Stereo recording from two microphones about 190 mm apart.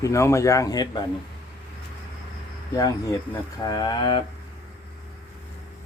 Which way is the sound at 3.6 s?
20° left (ahead or behind).